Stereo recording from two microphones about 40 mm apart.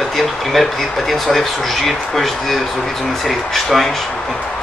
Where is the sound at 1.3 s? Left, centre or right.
Centre.